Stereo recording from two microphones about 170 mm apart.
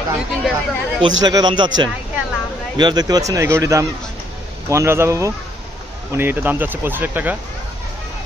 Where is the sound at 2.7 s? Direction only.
25° right (ahead or behind).